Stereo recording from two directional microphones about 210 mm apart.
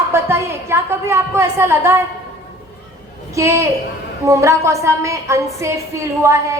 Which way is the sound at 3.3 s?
15° right (ahead or behind).